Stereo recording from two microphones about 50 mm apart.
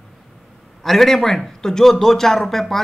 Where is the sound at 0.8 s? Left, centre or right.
Centre.